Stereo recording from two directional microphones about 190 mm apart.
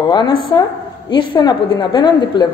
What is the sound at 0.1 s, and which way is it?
Speech, 25° left (ahead or behind).